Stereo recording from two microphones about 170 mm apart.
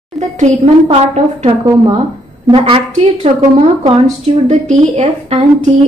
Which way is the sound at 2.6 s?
35° right (ahead or behind).